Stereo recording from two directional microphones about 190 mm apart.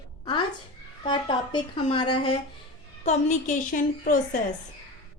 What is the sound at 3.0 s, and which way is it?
A woman's voice, 40° left (ahead or behind).